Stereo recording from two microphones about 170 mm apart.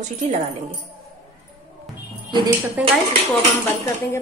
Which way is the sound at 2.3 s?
30° right (ahead or behind).